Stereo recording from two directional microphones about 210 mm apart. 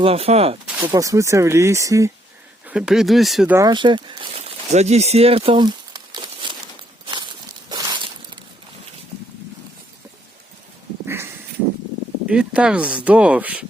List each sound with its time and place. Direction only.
0.0 s speech: 30° right (ahead or behind)
0.8 s speech: 15° right (ahead or behind)
2.6 s speech: 5° right (ahead or behind)
3.5 s speech: 20° right (ahead or behind)
7.7 s a sound: 20° right (ahead or behind)
11.0 s a sound: 10° right (ahead or behind)
12.3 s speech: 5° right (ahead or behind)